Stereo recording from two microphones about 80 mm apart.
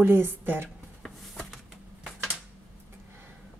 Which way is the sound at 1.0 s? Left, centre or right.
Centre.